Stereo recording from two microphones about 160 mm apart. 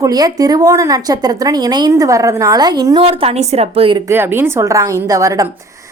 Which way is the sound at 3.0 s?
35° right (ahead or behind).